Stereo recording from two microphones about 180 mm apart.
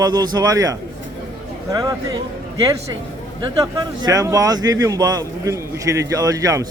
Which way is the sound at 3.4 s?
20° right (ahead or behind).